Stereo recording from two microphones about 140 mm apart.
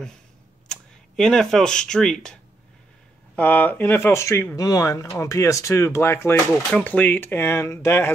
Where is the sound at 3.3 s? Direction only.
10° left (ahead or behind).